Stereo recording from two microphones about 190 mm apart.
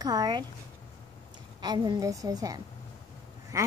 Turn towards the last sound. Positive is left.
turn(degrees=-15)  # may be behind; listen again after turning